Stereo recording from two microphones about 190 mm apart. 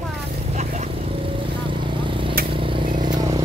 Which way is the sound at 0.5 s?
40° right (ahead or behind).